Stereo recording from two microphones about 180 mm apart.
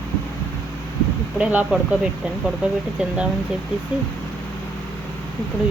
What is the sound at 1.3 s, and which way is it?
Speech, 5° right (ahead or behind).